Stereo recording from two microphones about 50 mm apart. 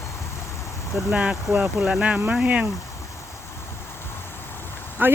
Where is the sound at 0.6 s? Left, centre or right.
Left.